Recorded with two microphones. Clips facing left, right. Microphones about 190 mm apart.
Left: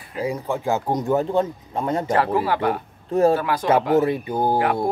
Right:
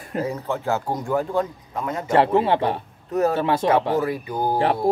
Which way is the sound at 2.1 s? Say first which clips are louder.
Right 6 dB; 25° right (ahead or behind).